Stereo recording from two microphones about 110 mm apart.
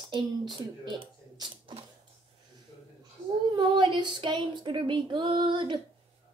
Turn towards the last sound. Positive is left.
turn(degrees=-45)  # may be behind; listen again after turning